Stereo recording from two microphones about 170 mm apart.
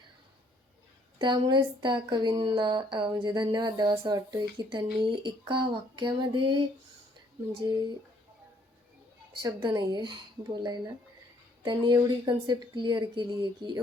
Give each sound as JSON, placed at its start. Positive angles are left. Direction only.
{"t": 1.2, "sound": "speech", "side_deg": -25}
{"t": 9.4, "sound": "speech", "side_deg": -25}